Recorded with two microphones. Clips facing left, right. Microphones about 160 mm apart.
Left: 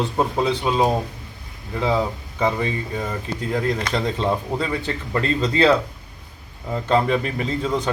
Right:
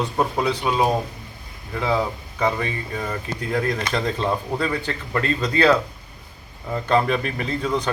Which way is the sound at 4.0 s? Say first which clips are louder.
Left 1 dB; 10° left (ahead or behind).